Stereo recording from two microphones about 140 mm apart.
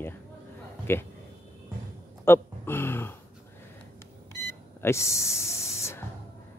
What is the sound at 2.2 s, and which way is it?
Speech, 15° left (ahead or behind).